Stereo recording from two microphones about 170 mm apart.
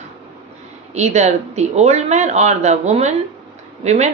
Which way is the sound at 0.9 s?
40° right (ahead or behind).